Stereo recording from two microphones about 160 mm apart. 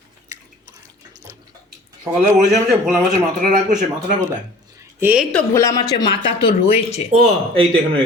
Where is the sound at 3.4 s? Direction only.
55° right (ahead or behind).